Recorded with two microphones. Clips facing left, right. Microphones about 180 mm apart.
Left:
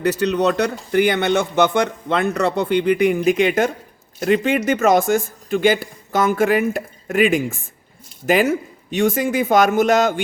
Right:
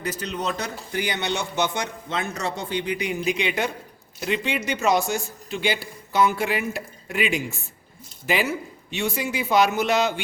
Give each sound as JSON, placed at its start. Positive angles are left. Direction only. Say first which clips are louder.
{"t": 0.0, "sound": "a man's voice", "louder": "left 11 dB", "side_deg": 70}